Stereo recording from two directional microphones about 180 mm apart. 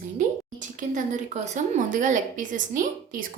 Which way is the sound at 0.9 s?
45° right (ahead or behind).